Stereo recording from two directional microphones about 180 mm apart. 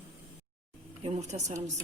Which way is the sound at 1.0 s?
40° right (ahead or behind).